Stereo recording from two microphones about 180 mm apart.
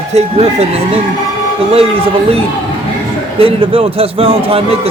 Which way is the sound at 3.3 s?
30° right (ahead or behind).